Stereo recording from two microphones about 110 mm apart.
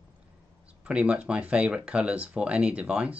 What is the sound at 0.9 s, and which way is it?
Speech, 10° right (ahead or behind).